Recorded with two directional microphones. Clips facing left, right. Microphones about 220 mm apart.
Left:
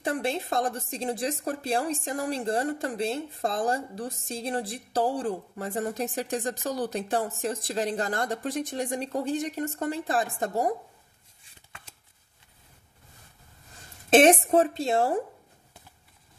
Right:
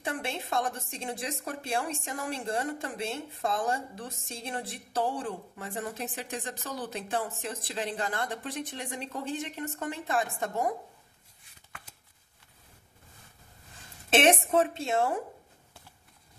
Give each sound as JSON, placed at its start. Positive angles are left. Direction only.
{"t": 0.0, "sound": "a woman's voice", "side_deg": 35}
{"t": 14.1, "sound": "a woman's voice", "side_deg": 40}